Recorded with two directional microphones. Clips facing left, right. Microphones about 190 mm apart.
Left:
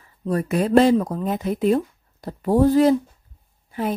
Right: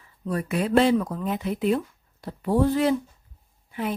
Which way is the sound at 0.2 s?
40° left (ahead or behind).